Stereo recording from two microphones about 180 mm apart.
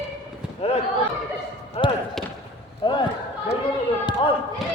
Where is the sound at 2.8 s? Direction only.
25° left (ahead or behind).